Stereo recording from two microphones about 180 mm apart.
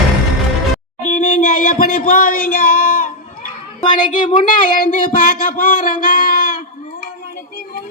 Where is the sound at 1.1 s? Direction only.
45° left (ahead or behind).